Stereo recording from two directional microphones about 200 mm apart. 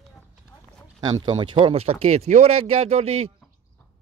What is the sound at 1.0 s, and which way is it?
Speech, 20° right (ahead or behind).